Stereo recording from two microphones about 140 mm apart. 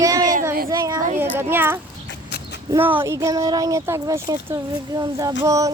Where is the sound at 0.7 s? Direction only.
25° right (ahead or behind).